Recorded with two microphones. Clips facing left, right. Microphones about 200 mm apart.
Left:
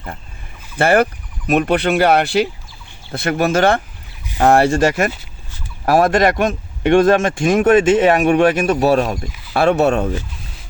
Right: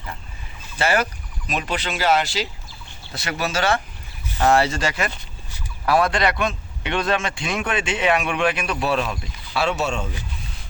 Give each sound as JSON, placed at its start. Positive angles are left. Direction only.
{"t": 0.8, "sound": "speech", "side_deg": 55}
{"t": 9.5, "sound": "speech", "side_deg": 55}